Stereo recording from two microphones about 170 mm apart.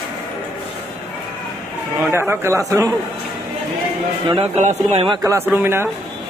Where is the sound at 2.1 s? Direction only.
15° right (ahead or behind).